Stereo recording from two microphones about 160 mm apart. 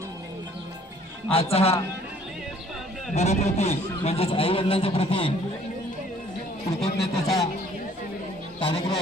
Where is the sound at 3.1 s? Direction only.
45° left (ahead or behind).